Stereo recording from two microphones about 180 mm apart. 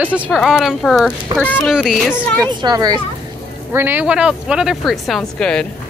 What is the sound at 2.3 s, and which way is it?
Speech, 20° right (ahead or behind).